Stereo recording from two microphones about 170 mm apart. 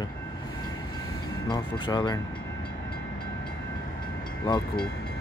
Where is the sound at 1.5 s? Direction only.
25° left (ahead or behind).